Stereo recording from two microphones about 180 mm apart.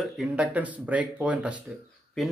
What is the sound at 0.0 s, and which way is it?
A man's voice, 5° right (ahead or behind).